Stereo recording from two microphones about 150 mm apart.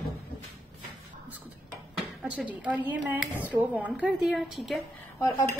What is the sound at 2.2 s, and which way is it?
A woman's voice, 10° right (ahead or behind).